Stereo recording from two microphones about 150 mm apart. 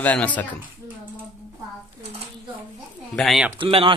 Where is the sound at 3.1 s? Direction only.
Centre (ahead or behind).